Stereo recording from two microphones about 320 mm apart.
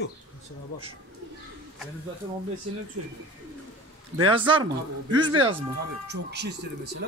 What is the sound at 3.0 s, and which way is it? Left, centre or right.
Speech, right.